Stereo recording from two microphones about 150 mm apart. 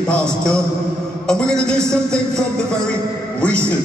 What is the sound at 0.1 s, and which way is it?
A man's voice, 5° left (ahead or behind).